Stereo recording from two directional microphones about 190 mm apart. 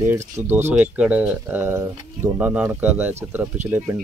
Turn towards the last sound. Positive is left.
turn(degrees=-10)  # may be behind; listen again after turning